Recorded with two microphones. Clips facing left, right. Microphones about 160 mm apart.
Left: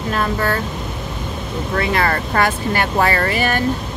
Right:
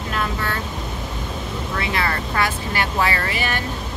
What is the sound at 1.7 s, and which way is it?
Speech, 50° left (ahead or behind).